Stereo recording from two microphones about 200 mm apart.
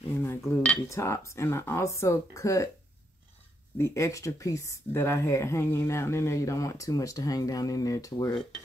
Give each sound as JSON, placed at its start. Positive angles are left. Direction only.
{"t": 0.2, "sound": "speech", "side_deg": 15}
{"t": 3.7, "sound": "speech", "side_deg": 15}